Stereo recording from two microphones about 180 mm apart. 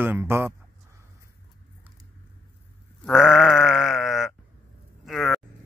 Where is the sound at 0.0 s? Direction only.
10° right (ahead or behind).